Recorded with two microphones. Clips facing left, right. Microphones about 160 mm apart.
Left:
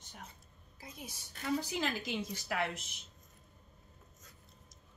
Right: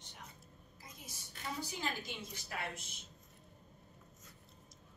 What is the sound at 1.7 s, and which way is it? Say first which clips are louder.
A woman's voice: left 6 dB; 90° left.